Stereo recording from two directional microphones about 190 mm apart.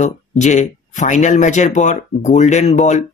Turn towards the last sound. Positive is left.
turn(degrees=40)  # may be behind; listen again after turning